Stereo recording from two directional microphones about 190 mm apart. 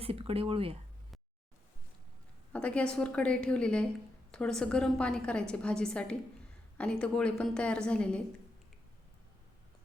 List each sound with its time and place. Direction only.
0.0 s speech: 30° right (ahead or behind)
2.5 s a woman's voice: 5° left (ahead or behind)